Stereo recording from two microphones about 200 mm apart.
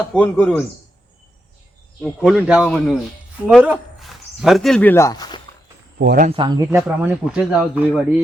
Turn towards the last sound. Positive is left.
turn(degrees=-5)  # may be behind; listen again after turning